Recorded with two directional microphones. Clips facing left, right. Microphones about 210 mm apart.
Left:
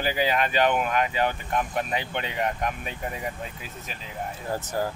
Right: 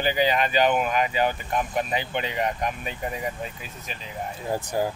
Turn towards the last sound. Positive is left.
turn(degrees=-15)  # may be behind; listen again after turning